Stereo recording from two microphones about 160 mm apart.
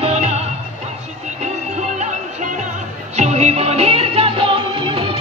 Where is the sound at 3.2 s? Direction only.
40° right (ahead or behind).